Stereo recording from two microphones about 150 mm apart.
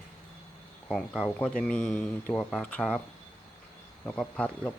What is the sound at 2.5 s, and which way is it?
Mantra, 5° left (ahead or behind).